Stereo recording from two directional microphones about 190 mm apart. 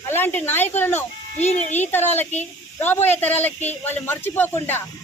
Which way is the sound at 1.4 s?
35° left (ahead or behind).